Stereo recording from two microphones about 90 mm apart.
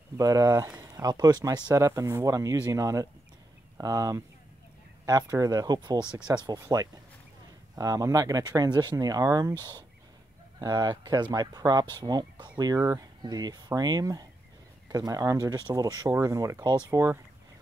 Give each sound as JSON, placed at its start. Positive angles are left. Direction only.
{"t": 0.2, "sound": "speech", "side_deg": -40}
{"t": 8.9, "sound": "speech", "side_deg": -40}